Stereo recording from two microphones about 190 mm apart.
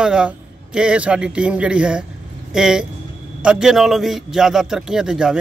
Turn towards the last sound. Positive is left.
turn(degrees=-5)  # may be behind; listen again after turning